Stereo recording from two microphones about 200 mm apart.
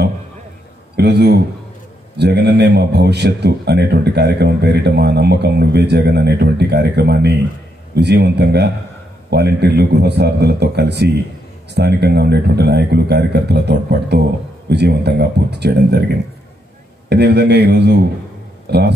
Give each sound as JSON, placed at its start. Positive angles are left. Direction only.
{"t": 0.9, "sound": "a man's voice", "side_deg": -55}
{"t": 17.1, "sound": "a man's voice", "side_deg": -55}